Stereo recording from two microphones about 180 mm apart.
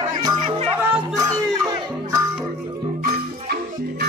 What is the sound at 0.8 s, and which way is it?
Music, 10° right (ahead or behind).